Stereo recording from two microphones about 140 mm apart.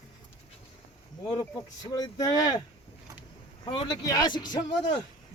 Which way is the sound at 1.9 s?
25° left (ahead or behind).